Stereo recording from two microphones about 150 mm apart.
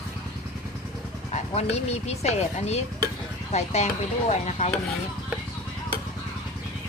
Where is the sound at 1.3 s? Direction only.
45° left (ahead or behind).